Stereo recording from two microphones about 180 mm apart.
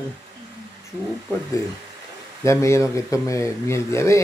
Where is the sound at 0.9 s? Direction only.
15° right (ahead or behind).